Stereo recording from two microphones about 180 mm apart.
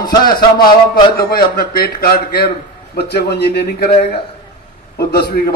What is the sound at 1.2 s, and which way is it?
A man's voice, 60° left (ahead or behind).